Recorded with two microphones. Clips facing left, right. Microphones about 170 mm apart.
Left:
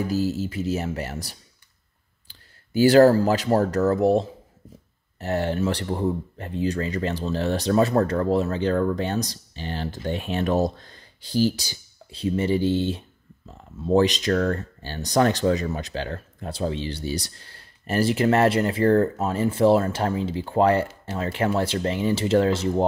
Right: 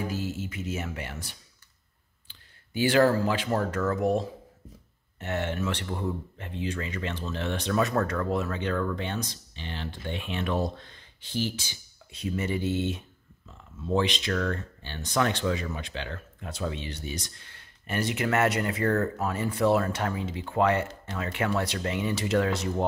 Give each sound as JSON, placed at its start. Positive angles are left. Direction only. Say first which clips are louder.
{"t": 0.1, "sound": "speech", "louder": "left 8 dB", "side_deg": 35}